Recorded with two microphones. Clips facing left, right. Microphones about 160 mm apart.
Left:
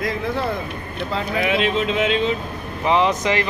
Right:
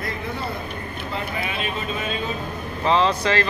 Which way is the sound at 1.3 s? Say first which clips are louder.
Left 8 dB; 90° left.